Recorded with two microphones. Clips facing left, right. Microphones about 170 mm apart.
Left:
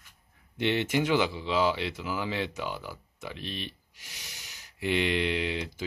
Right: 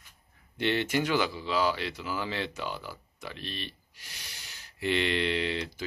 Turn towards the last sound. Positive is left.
turn(degrees=15)  # may be behind; listen again after turning